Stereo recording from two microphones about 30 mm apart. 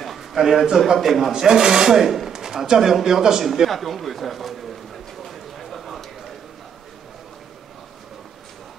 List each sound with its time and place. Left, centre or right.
0.2 s a man's voice: centre
1.3 s speech: right
3.6 s a sound: centre